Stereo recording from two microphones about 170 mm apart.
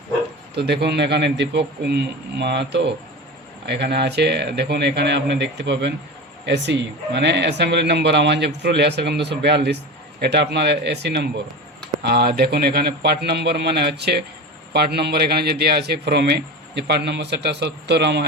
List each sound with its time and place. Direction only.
0.5 s a man's voice: 80° right
3.7 s a man's voice: 75° right (ahead or behind)
12.0 s a man's voice: 70° right (ahead or behind)